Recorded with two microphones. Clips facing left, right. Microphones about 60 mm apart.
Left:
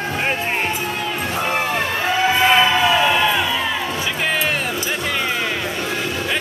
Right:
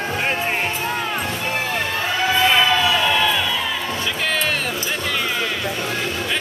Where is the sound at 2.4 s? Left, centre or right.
Centre.